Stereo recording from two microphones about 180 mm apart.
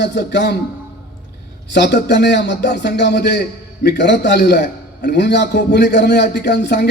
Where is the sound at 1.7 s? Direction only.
70° left (ahead or behind).